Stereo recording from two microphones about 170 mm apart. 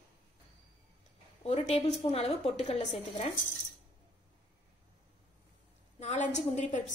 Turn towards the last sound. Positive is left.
turn(degrees=45)  # may be behind; listen again after turning